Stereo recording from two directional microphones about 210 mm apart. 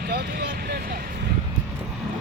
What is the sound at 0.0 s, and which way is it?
Vehicle, 50° right (ahead or behind).